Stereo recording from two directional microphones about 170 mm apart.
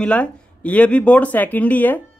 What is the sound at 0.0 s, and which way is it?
Speech, 5° left (ahead or behind).